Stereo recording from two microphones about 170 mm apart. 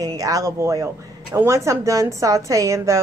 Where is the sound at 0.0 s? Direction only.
20° right (ahead or behind).